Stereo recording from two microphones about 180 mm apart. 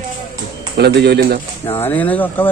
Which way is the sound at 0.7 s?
65° right (ahead or behind).